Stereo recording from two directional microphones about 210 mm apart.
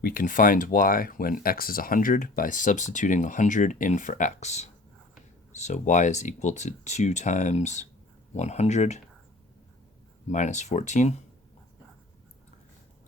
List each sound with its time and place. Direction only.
0.0 s speech: 40° left (ahead or behind)
10.2 s speech: 35° left (ahead or behind)